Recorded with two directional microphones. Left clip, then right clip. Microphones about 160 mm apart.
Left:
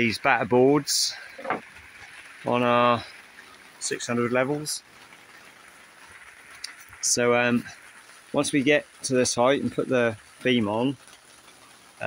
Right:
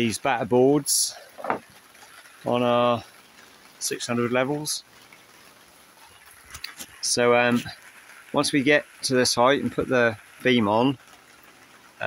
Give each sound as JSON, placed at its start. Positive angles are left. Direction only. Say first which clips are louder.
{"t": 0.0, "sound": "speech", "louder": "left 2 dB", "side_deg": -20}
{"t": 2.5, "sound": "speech", "louder": "even", "side_deg": -15}
{"t": 6.6, "sound": "a sound", "louder": "even", "side_deg": 0}
{"t": 8.3, "sound": "speech", "louder": "right 1 dB", "side_deg": 0}
{"t": 10.6, "sound": "speech", "louder": "right 5 dB", "side_deg": -20}